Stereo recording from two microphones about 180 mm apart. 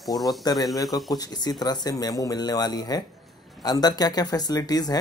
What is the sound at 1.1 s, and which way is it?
Speech, 20° left (ahead or behind).